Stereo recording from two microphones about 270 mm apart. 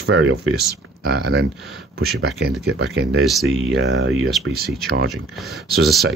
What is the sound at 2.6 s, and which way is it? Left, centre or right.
Speech, right.